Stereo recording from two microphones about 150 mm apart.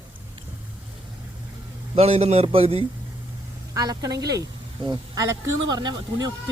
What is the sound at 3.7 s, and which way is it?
Speech, 25° right (ahead or behind).